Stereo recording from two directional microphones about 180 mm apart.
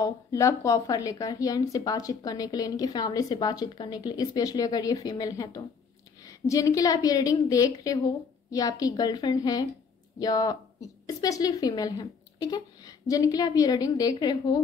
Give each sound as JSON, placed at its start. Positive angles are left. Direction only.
{"t": 0.0, "sound": "a woman's voice", "side_deg": 20}